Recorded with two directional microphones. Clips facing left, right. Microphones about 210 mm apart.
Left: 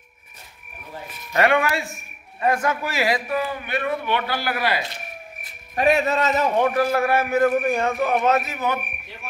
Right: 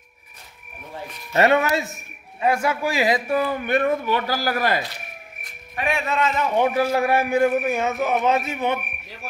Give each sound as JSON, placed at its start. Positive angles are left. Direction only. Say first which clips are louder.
{"t": 1.3, "sound": "speech", "louder": "right 2 dB", "side_deg": -25}
{"t": 2.4, "sound": "a man's voice", "louder": "right 1 dB", "side_deg": -10}
{"t": 3.3, "sound": "a man's voice", "louder": "right 4 dB", "side_deg": -35}
{"t": 5.8, "sound": "a man's voice", "louder": "left 4 dB", "side_deg": 40}
{"t": 6.6, "sound": "a man's voice", "louder": "even", "side_deg": -10}
{"t": 8.5, "sound": "speech", "louder": "right 2 dB", "side_deg": -30}